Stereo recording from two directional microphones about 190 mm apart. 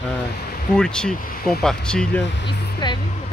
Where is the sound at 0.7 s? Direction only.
5° left (ahead or behind).